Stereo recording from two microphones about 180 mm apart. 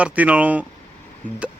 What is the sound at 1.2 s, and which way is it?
Speech, 10° left (ahead or behind).